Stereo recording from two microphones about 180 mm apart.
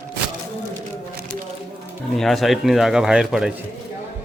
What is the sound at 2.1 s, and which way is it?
Speech, centre (ahead or behind).